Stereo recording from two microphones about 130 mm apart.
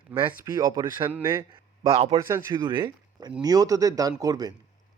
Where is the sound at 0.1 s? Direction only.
25° right (ahead or behind).